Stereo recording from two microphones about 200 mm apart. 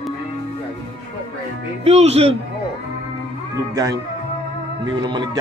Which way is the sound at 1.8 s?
30° right (ahead or behind).